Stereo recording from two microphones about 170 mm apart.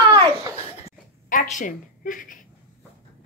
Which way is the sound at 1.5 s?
50° left (ahead or behind).